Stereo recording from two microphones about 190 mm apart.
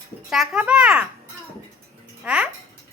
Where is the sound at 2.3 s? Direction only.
5° right (ahead or behind).